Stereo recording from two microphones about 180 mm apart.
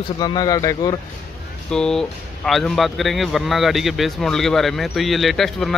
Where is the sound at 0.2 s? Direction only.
20° left (ahead or behind).